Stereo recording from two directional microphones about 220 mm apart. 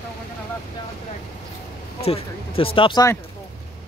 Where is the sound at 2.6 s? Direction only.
25° left (ahead or behind).